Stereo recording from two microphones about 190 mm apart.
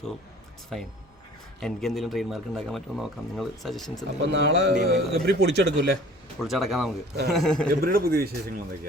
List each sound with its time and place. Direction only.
0.7 s a man's voice: centre (ahead or behind)
4.2 s music: 65° right (ahead or behind)
6.4 s a man's voice: centre (ahead or behind)
7.7 s speech: 50° right (ahead or behind)